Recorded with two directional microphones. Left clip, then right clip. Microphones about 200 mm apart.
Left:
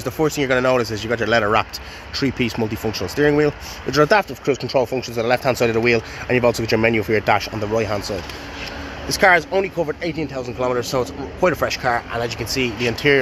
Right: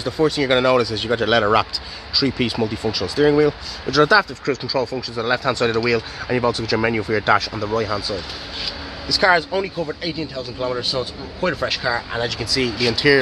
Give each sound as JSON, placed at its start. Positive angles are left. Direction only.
{"t": 0.0, "sound": "speech", "side_deg": 10}
{"t": 9.1, "sound": "speech", "side_deg": 25}
{"t": 12.1, "sound": "speech", "side_deg": 10}